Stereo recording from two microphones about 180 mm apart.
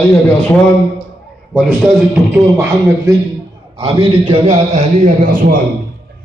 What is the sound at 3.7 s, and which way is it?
A man's voice, 25° right (ahead or behind).